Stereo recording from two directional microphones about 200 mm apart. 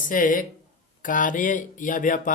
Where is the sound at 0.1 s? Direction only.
45° left (ahead or behind).